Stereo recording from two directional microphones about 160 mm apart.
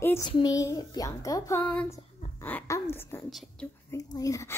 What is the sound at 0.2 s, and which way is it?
A woman's voice, 25° left (ahead or behind).